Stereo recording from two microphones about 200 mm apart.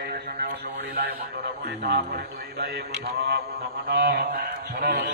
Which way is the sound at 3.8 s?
55° right (ahead or behind).